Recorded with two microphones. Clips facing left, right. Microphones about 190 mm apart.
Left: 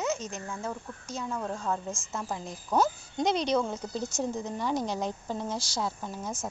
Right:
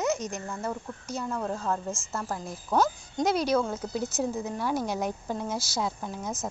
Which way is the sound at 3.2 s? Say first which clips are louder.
Right 2 dB; 5° right (ahead or behind).